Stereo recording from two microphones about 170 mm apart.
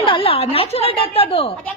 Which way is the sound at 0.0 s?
30° left (ahead or behind).